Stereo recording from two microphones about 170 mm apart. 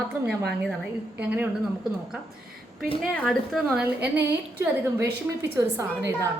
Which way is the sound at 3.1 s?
5° left (ahead or behind).